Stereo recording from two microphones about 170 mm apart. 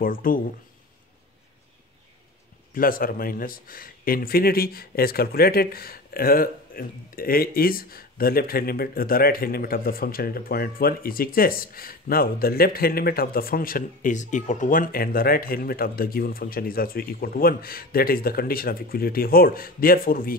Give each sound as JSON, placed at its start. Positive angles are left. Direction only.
{"t": 0.0, "sound": "a man's voice", "side_deg": 55}
{"t": 2.7, "sound": "a man's voice", "side_deg": 55}